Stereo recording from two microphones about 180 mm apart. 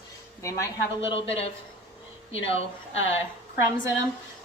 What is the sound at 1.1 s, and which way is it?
Speech, 35° left (ahead or behind).